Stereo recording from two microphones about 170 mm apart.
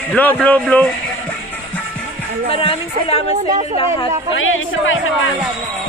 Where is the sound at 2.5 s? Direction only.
35° left (ahead or behind).